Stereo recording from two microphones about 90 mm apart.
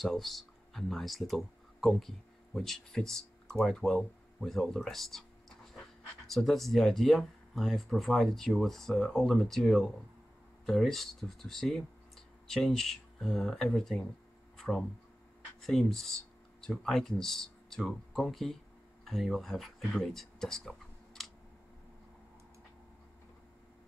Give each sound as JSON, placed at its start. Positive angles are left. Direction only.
{"t": 0.0, "sound": "speech", "side_deg": 0}
{"t": 6.2, "sound": "speech", "side_deg": 5}